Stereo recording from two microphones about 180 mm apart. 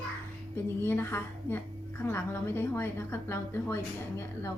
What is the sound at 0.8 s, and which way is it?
A woman's voice, 10° left (ahead or behind).